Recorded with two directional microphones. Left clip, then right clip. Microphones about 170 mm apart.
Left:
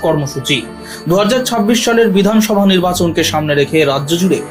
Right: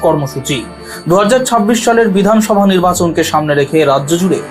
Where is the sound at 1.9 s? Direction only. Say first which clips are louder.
Right 3 dB; 25° left (ahead or behind).